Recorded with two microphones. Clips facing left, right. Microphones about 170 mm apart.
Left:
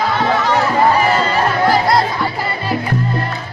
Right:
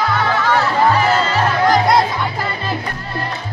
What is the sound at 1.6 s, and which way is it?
Music, 5° left (ahead or behind).